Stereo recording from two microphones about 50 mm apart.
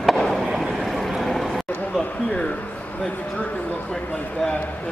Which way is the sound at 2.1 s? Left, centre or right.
Left.